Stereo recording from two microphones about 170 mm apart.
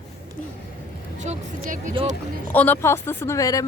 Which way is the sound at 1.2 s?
45° right (ahead or behind).